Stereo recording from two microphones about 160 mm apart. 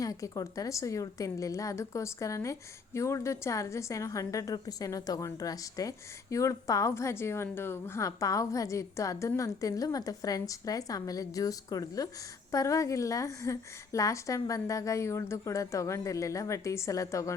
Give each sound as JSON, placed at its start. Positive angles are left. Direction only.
{"t": 0.0, "sound": "a woman's voice", "side_deg": 20}